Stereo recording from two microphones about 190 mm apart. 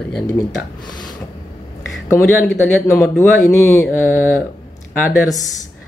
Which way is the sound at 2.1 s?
15° left (ahead or behind).